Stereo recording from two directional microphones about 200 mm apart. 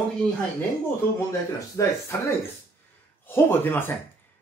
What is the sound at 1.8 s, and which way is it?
Speech, 15° left (ahead or behind).